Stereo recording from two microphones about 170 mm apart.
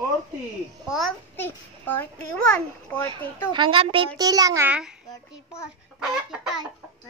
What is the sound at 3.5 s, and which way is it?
Speech, 30° right (ahead or behind).